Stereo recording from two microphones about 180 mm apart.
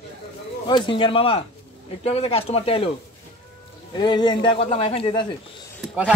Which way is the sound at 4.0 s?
25° left (ahead or behind).